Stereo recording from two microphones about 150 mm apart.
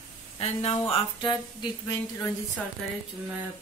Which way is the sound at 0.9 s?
35° left (ahead or behind).